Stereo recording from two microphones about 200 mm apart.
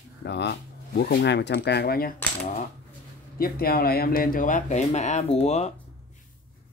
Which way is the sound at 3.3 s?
50° left (ahead or behind).